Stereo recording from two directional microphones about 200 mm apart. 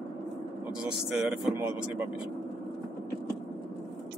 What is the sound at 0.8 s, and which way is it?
Speech, 5° right (ahead or behind).